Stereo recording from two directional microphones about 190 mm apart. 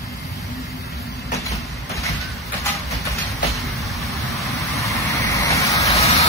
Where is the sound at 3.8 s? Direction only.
Centre (ahead or behind).